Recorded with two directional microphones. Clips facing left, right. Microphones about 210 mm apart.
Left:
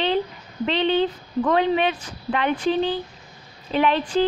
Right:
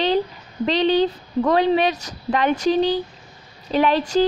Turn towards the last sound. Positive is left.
turn(degrees=-40)  # may be behind; listen again after turning